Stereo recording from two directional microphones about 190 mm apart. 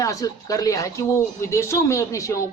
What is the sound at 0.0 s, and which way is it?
Speech, 15° left (ahead or behind).